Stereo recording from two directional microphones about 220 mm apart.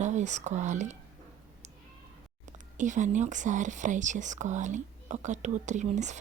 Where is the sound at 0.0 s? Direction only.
30° right (ahead or behind).